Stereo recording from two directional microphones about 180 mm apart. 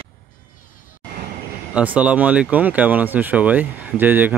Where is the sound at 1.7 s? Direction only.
5° right (ahead or behind).